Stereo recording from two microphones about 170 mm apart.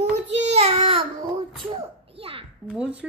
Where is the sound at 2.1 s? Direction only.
35° right (ahead or behind).